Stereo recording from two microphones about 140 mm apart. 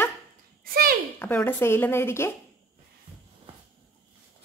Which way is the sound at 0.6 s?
90° right.